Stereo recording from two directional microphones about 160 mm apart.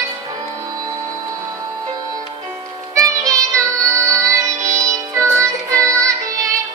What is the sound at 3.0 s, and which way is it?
Music, 20° right (ahead or behind).